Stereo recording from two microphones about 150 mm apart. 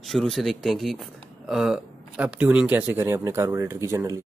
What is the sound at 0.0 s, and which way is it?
Speech, centre (ahead or behind).